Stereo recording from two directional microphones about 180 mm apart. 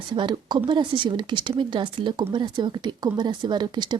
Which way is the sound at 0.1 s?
25° right (ahead or behind).